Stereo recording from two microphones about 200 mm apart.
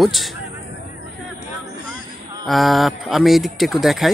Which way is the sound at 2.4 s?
Centre (ahead or behind).